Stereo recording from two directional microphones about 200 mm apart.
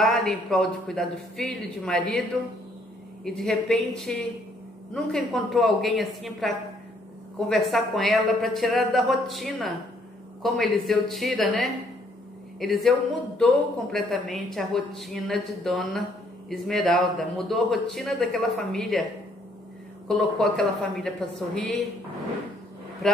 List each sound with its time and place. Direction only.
0.0 s a man's voice: centre (ahead or behind)
3.3 s a man's voice: centre (ahead or behind)
13.9 s a man's voice: centre (ahead or behind)
20.1 s a man's voice: 5° left (ahead or behind)